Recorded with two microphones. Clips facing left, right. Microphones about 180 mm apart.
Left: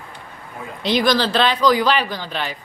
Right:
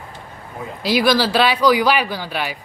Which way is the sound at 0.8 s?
10° right (ahead or behind).